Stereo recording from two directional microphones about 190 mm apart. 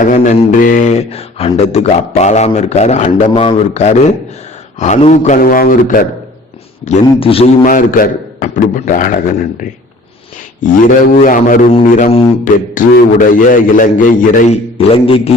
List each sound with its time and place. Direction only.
0.0 s a man's voice: 45° left (ahead or behind)
6.8 s a man's voice: 30° left (ahead or behind)
7.6 s a man's voice: 45° left (ahead or behind)
10.6 s a man's voice: 45° left (ahead or behind)
14.8 s a man's voice: 30° left (ahead or behind)